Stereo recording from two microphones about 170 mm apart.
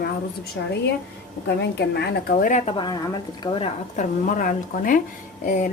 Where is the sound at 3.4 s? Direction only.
30° left (ahead or behind).